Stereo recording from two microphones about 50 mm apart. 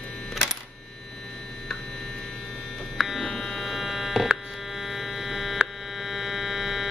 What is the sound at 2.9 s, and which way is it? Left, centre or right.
Buzzer, centre.